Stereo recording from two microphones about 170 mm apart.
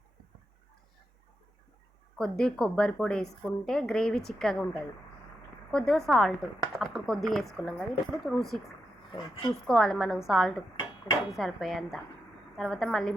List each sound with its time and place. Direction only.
2.1 s speech: 5° left (ahead or behind)
5.7 s speech: 5° left (ahead or behind)
9.1 s speech: 25° left (ahead or behind)
9.6 s speech: 5° left (ahead or behind)